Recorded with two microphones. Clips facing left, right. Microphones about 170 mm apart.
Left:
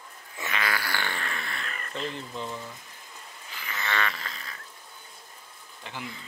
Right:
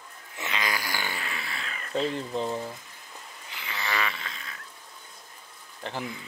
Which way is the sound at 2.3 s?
40° right (ahead or behind).